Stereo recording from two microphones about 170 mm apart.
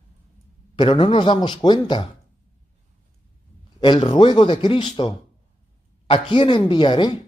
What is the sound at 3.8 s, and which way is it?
Speech, 30° left (ahead or behind).